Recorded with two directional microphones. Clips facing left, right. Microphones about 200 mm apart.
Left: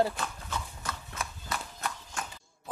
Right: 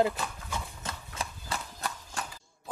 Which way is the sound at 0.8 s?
30° right (ahead or behind).